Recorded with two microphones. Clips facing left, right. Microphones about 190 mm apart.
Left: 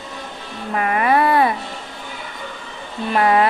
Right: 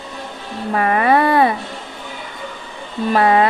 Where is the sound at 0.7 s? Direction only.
35° right (ahead or behind).